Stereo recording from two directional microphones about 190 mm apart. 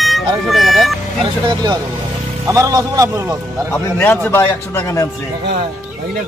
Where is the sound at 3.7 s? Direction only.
10° left (ahead or behind).